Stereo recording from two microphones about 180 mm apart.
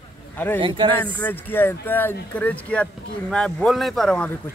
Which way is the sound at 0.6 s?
25° right (ahead or behind).